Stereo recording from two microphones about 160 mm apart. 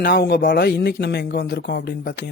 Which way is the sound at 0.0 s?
75° left (ahead or behind).